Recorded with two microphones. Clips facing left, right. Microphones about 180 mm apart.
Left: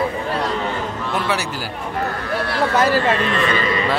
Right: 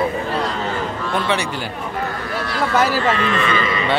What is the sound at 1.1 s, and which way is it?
Speech, 5° left (ahead or behind).